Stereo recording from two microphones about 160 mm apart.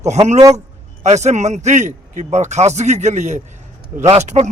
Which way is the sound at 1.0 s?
45° right (ahead or behind).